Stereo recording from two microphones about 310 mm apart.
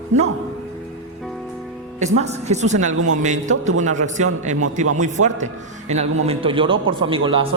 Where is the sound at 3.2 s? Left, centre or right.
Right.